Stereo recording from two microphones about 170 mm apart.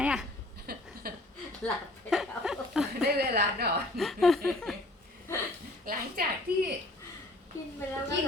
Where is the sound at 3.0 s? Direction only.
70° right (ahead or behind).